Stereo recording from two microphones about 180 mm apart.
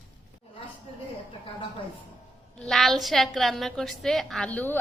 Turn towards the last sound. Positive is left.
turn(degrees=10)  # may be behind; listen again after turning